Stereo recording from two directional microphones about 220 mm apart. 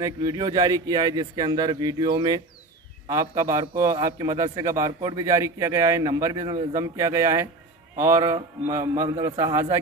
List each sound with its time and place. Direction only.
0.0 s a man's voice: 15° right (ahead or behind)